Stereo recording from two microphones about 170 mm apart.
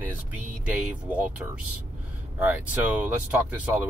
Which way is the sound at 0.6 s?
10° right (ahead or behind).